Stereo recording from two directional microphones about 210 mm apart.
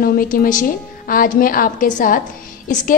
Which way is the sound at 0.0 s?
45° left (ahead or behind).